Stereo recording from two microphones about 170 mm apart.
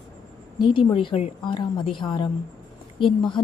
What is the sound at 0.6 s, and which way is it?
A woman's voice, 25° left (ahead or behind).